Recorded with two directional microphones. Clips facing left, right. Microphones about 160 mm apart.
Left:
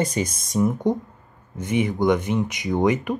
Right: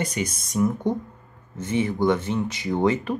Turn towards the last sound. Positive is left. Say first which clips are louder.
# left 1 dB
turn(degrees=15)  # may be behind; listen again after turning